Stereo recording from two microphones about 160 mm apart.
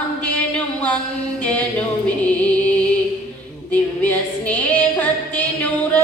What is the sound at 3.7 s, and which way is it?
Female singing, 10° left (ahead or behind).